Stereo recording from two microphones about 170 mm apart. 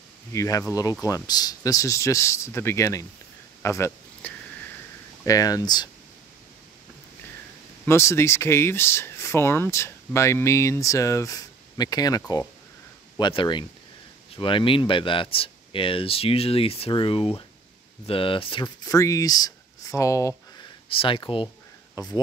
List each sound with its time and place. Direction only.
0.3 s speech: 20° left (ahead or behind)
7.8 s speech: 15° left (ahead or behind)
13.2 s speech: 30° left (ahead or behind)
20.9 s speech: 30° left (ahead or behind)